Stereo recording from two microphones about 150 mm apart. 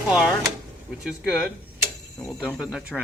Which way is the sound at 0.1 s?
5° right (ahead or behind).